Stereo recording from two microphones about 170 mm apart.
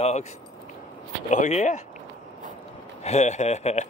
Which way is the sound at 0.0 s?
40° left (ahead or behind).